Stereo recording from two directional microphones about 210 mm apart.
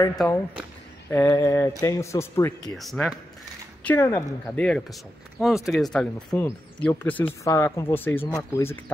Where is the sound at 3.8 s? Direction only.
15° left (ahead or behind).